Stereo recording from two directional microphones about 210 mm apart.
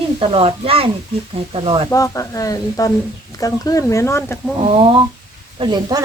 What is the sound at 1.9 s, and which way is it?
Speech, 15° left (ahead or behind).